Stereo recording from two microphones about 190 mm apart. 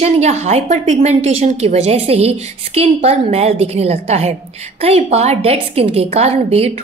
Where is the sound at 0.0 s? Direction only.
35° right (ahead or behind).